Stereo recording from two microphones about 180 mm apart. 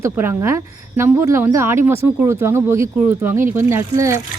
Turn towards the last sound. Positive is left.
turn(degrees=-15)  # may be behind; listen again after turning